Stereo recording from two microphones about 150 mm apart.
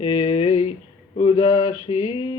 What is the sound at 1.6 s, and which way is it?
Mantra, 45° left (ahead or behind).